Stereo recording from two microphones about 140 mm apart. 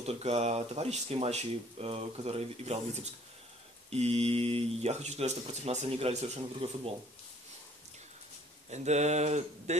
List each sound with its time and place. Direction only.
0.0 s speech: 50° right (ahead or behind)
8.6 s speech: 55° right (ahead or behind)